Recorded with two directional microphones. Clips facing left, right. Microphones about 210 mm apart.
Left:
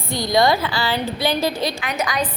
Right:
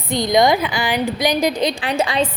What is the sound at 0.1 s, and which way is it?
A woman's voice, 20° right (ahead or behind).